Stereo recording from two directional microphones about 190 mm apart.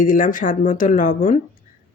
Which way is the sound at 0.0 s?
45° left (ahead or behind).